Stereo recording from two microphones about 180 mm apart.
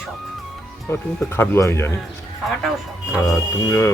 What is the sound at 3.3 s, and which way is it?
Speech, 15° left (ahead or behind).